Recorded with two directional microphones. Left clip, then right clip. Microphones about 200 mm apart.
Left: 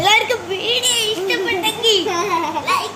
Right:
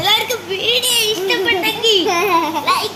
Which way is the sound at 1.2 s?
35° right (ahead or behind).